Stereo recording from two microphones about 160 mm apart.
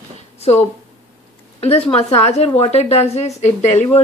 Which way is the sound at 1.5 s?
35° left (ahead or behind).